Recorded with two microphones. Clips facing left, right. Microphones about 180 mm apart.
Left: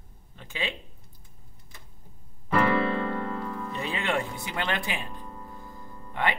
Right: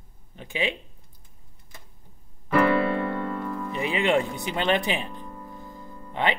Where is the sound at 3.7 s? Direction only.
15° right (ahead or behind).